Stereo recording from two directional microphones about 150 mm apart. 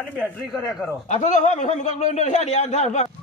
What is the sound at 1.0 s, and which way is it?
A man's voice, 55° left (ahead or behind).